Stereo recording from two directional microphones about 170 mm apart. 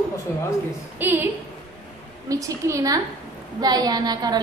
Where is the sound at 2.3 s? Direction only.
20° right (ahead or behind).